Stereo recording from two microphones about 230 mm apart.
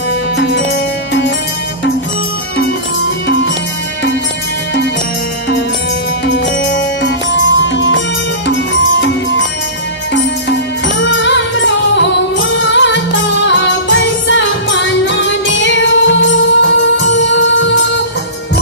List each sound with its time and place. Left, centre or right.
0.4 s music: left
6.2 s music: left
9.0 s music: left
11.0 s music: left